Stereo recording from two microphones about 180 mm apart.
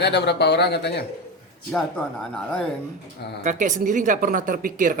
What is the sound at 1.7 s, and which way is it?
Speech, 5° left (ahead or behind).